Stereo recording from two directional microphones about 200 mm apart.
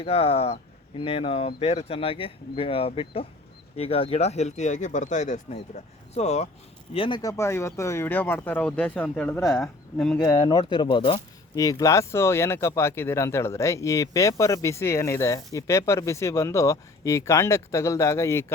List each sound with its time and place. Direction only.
0.0 s speech: 30° left (ahead or behind); by 10.2 s centre (ahead or behind)
10.2 s speech: 20° left (ahead or behind)